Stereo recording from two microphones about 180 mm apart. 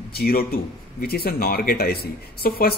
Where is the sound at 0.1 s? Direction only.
60° left (ahead or behind).